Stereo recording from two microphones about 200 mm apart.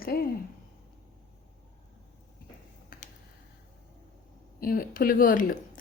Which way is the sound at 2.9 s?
45° left (ahead or behind).